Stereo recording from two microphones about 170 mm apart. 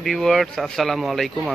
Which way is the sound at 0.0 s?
Centre (ahead or behind).